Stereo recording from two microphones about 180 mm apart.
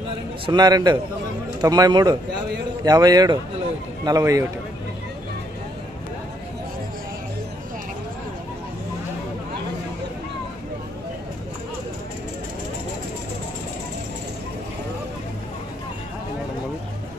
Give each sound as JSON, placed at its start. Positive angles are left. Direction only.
{"t": 0.5, "sound": "a man's voice", "side_deg": -25}